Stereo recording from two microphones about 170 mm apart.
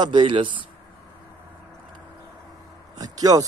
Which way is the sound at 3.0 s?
20° right (ahead or behind).